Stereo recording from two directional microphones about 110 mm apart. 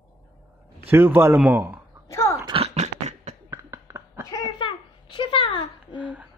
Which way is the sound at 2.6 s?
80° right.